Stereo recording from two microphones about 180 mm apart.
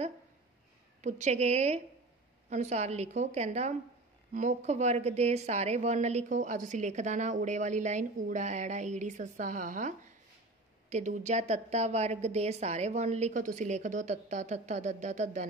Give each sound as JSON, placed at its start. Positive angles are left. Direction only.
{"t": 1.0, "sound": "a woman's voice", "side_deg": -40}